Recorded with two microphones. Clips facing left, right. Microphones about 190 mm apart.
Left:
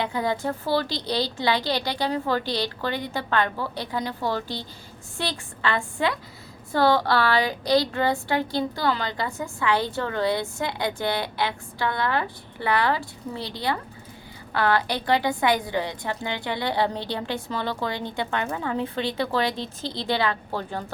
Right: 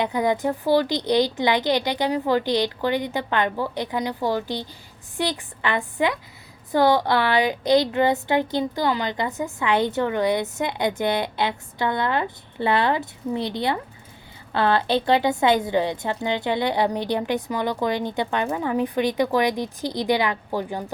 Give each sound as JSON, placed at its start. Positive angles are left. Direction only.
{"t": 0.0, "sound": "a woman's voice", "side_deg": -20}